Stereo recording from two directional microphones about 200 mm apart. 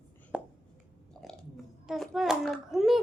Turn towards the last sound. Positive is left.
turn(degrees=0)  # may be behind; listen again after turning